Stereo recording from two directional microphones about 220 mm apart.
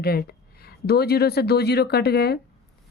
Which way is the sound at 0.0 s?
45° left (ahead or behind).